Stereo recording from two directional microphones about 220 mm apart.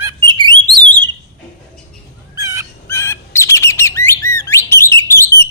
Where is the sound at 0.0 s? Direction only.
20° right (ahead or behind).